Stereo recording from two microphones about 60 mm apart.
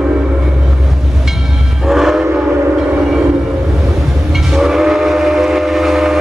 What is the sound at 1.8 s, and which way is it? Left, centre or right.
Train, centre.